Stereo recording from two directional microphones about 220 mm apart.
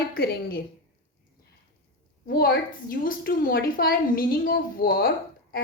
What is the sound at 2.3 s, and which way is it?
A woman's voice, 40° left (ahead or behind).